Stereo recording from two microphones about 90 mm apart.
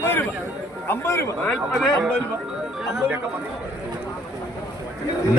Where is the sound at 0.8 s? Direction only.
30° left (ahead or behind).